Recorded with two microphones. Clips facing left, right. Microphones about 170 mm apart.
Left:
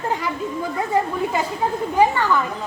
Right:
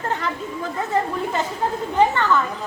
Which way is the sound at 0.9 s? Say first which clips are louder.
Left 1 dB; 10° left (ahead or behind).